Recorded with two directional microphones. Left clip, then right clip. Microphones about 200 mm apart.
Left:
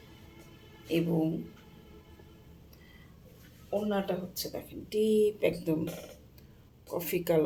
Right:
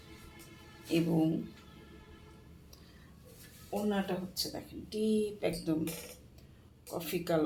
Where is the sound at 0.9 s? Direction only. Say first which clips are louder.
Left 1 dB; centre (ahead or behind).